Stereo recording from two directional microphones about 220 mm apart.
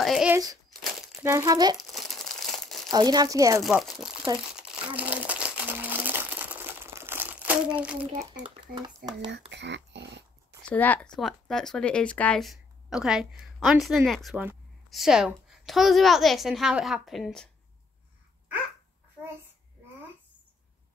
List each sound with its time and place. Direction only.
0.0 s speech: centre (ahead or behind); by 1.8 s 20° right (ahead or behind)
1.8 s crumpling: centre (ahead or behind)
2.9 s speech: 20° right (ahead or behind)
3.6 s speech: centre (ahead or behind)
4.6 s crumpling: 5° right (ahead or behind)
7.8 s speech: 5° right (ahead or behind)
8.5 s speech: 20° right (ahead or behind)
9.5 s speech: 55° right (ahead or behind)
10.7 s speech: 5° left (ahead or behind)